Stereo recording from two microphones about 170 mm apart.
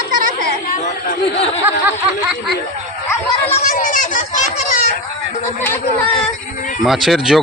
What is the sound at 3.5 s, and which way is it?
Children playing, 45° left (ahead or behind).